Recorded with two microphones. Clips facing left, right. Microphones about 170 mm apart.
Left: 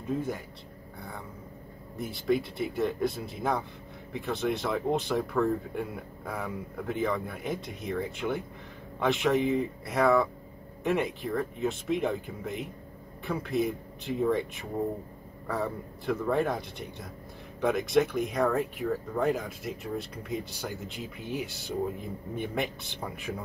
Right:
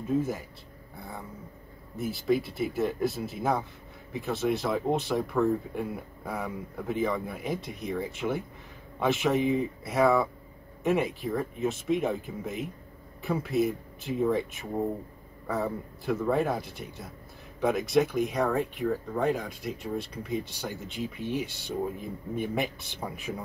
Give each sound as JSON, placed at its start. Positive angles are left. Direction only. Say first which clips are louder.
{"t": 2.0, "sound": "speech", "louder": "right 1 dB", "side_deg": 0}